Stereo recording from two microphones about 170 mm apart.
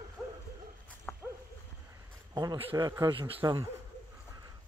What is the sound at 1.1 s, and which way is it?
Dog, 5° left (ahead or behind).